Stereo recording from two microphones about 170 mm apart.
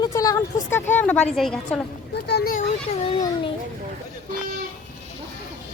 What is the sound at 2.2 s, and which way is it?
Speech, 80° left.